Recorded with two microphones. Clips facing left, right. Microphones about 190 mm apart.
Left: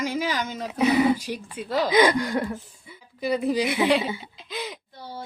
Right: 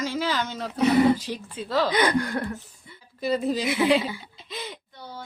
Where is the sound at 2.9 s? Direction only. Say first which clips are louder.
Even; 10° left (ahead or behind).